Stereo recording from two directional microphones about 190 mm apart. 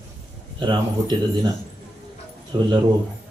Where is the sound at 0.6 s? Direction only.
25° right (ahead or behind).